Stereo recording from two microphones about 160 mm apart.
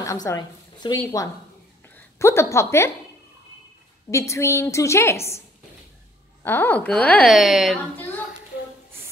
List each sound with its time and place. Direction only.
0.0 s a woman's voice: 20° left (ahead or behind)
4.1 s speech: 20° left (ahead or behind)
6.4 s speech: 15° left (ahead or behind)